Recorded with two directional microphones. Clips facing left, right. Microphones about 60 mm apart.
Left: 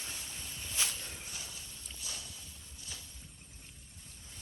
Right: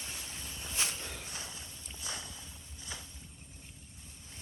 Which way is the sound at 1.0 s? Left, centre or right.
Right.